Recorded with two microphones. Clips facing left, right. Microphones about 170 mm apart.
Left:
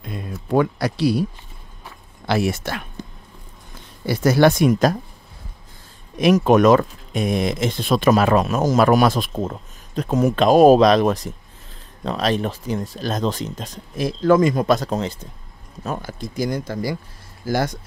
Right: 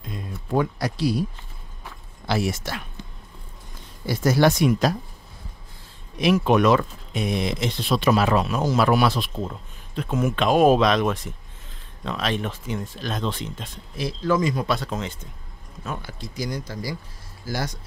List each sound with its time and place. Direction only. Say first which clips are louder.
0.0 s a sound: left 4 dB; 70° left (ahead or behind)
2.2 s speech: left 4 dB; 60° left (ahead or behind)
4.0 s speech: left 4 dB; 70° left (ahead or behind); by 4.9 s 45° left (ahead or behind)
6.1 s speech: left 4 dB; 45° left (ahead or behind)